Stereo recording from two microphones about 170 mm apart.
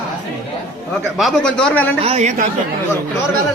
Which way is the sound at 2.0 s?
40° right (ahead or behind).